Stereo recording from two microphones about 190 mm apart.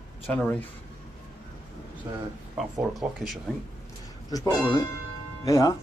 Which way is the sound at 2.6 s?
Centre (ahead or behind).